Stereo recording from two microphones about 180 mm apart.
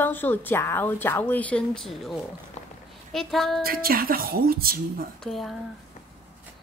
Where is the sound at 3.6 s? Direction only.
55° right (ahead or behind).